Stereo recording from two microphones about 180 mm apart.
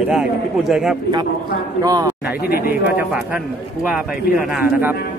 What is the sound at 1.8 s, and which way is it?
Speech, 20° right (ahead or behind).